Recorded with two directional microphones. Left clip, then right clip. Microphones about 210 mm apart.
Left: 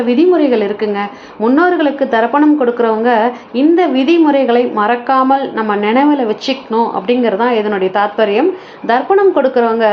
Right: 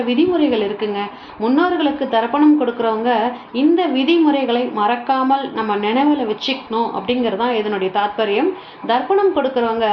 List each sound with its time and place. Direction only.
0.1 s a woman's voice: 20° left (ahead or behind)